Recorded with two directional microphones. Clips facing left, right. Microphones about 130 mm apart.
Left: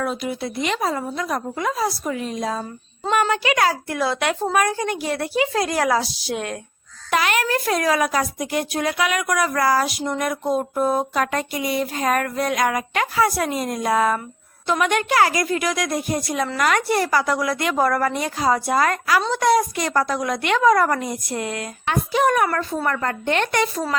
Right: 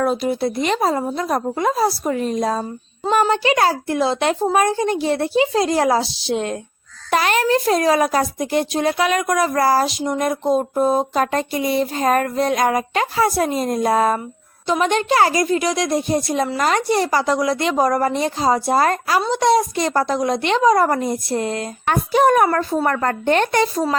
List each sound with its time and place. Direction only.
0.0 s speech: 35° right (ahead or behind)
3.1 s a sound: 30° right (ahead or behind)
21.8 s speech: 40° right (ahead or behind)